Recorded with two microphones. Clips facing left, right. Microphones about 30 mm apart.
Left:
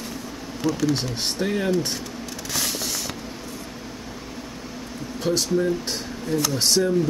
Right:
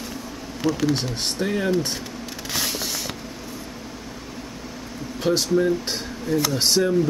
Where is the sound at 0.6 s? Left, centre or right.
Centre.